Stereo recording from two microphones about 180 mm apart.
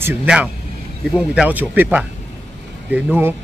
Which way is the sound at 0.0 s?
10° right (ahead or behind).